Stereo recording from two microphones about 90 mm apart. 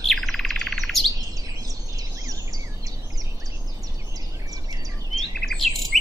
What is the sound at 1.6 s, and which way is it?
Bird, 40° right (ahead or behind).